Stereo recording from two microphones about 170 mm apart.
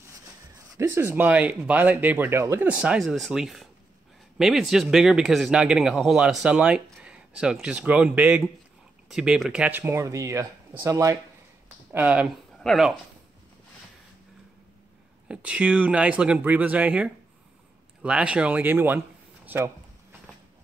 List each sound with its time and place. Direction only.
0.7 s speech: 15° right (ahead or behind)
15.2 s speech: 5° right (ahead or behind)
19.4 s a sound: 10° right (ahead or behind)